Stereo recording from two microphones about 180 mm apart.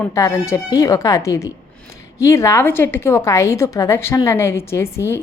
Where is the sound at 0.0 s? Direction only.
15° left (ahead or behind).